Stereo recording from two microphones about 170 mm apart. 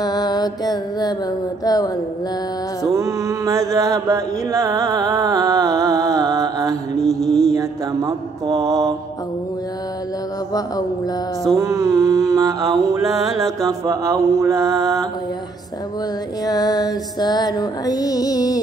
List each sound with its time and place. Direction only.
0.0 s music: 25° left (ahead or behind)
2.9 s mantra: 20° right (ahead or behind)
7.0 s mantra: centre (ahead or behind)
7.5 s mantra: 20° right (ahead or behind)
11.5 s mantra: 20° right (ahead or behind)
16.4 s music: 20° left (ahead or behind)